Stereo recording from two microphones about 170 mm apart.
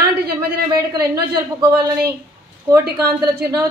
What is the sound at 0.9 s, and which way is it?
Speech, 20° right (ahead or behind).